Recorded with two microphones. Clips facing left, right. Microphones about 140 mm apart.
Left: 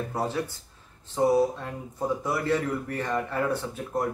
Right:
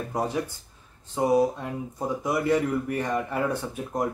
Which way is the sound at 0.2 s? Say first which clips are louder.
Right 3 dB; 15° right (ahead or behind).